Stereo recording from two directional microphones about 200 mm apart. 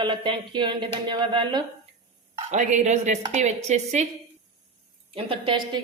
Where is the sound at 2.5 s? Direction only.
35° right (ahead or behind).